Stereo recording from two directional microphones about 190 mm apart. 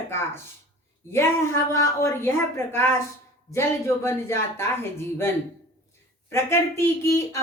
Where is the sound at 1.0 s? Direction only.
15° left (ahead or behind).